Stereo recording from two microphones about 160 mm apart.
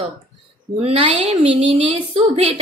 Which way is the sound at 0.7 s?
40° right (ahead or behind).